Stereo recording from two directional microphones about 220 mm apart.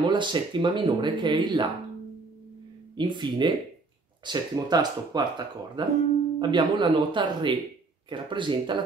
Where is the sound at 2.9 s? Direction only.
20° right (ahead or behind).